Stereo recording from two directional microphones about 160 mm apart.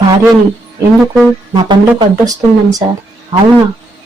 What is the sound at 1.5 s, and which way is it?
Speech, 25° right (ahead or behind).